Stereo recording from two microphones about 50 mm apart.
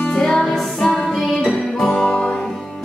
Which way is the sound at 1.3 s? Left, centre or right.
Left.